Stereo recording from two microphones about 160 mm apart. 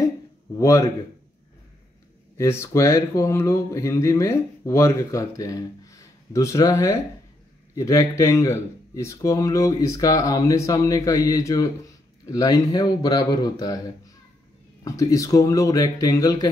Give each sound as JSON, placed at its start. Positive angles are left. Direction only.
{"t": 0.6, "sound": "speech", "side_deg": 20}
{"t": 2.3, "sound": "speech", "side_deg": 15}